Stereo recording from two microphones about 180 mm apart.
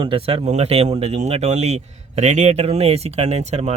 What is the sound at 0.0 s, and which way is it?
Speech, 30° right (ahead or behind).